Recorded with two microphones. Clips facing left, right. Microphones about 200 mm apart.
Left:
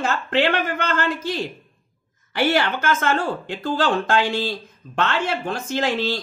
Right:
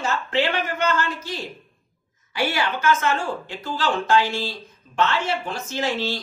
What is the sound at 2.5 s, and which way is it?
Speech, 50° left (ahead or behind).